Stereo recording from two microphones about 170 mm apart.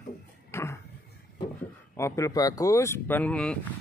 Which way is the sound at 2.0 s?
15° left (ahead or behind).